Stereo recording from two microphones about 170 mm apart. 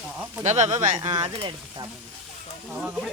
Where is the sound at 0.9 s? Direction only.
25° right (ahead or behind).